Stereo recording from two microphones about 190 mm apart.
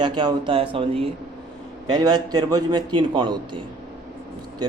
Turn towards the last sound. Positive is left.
turn(degrees=-20)  # may be behind; listen again after turning